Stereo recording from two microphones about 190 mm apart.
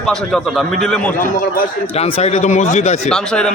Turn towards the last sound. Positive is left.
turn(degrees=5)  # may be behind; listen again after turning